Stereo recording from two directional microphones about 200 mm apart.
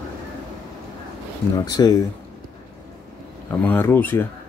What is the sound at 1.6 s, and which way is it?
Speech, 20° left (ahead or behind).